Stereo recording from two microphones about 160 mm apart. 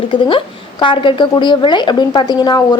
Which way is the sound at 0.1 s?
30° left (ahead or behind).